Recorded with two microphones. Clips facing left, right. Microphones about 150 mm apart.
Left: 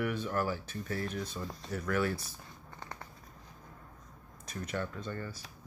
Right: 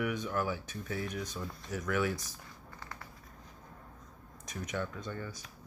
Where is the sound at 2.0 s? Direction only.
15° right (ahead or behind).